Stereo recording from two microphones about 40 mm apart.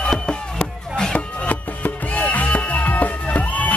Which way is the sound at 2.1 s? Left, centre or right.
Left.